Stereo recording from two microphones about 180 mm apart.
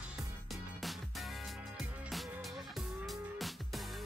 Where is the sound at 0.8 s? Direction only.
Centre (ahead or behind).